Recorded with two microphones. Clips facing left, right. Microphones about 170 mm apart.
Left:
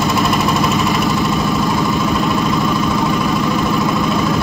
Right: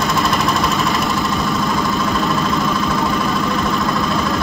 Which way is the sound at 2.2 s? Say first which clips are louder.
Left 2 dB; 15° left (ahead or behind).